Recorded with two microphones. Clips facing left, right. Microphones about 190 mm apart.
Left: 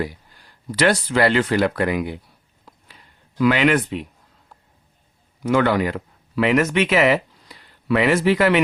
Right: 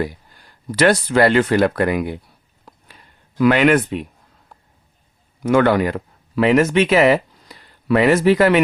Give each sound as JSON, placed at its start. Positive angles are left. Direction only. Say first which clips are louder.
{"t": 0.7, "sound": "speech", "louder": "right 3 dB", "side_deg": -50}
{"t": 2.6, "sound": "a sound", "louder": "right 2 dB", "side_deg": -50}
{"t": 5.4, "sound": "speech", "louder": "right 3 dB", "side_deg": -50}